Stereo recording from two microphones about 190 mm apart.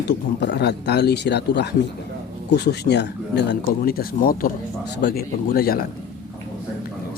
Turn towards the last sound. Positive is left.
turn(degrees=50)  # may be behind; listen again after turning